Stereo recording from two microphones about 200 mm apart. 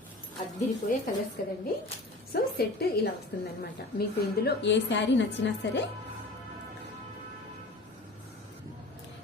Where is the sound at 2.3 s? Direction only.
50° left (ahead or behind).